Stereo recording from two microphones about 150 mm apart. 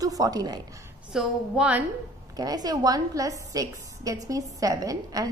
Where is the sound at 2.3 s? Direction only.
25° right (ahead or behind).